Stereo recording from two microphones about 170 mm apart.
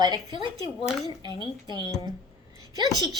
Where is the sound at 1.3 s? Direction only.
20° left (ahead or behind).